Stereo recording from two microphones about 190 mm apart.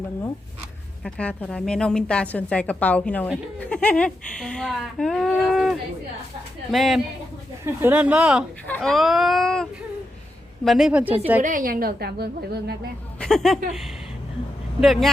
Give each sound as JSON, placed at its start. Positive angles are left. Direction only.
{"t": 1.0, "sound": "a woman's voice", "side_deg": 5}
{"t": 7.6, "sound": "speech", "side_deg": -10}
{"t": 8.6, "sound": "a woman's voice", "side_deg": 5}
{"t": 11.4, "sound": "a woman's voice", "side_deg": -45}
{"t": 13.1, "sound": "speech", "side_deg": 5}
{"t": 14.8, "sound": "a woman's voice", "side_deg": 0}